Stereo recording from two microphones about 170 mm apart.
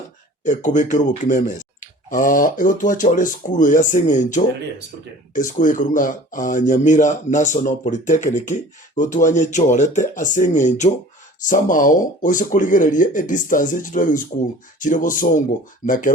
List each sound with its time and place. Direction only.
0.4 s speech: 45° left (ahead or behind)